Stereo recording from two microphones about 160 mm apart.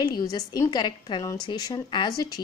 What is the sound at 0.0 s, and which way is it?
A woman's voice, 25° left (ahead or behind).